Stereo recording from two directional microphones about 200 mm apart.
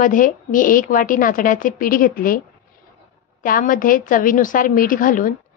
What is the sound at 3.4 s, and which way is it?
Speech, 45° left (ahead or behind).